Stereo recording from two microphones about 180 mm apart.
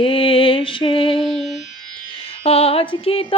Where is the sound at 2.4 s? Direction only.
35° left (ahead or behind).